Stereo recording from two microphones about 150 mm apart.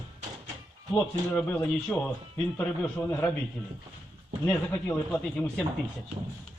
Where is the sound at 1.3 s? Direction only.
15° left (ahead or behind).